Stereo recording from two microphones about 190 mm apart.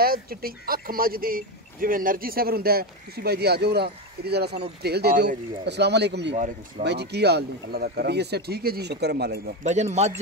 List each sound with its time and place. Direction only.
0.0 s speech: 50° right (ahead or behind)
9.6 s a man's voice: 35° right (ahead or behind)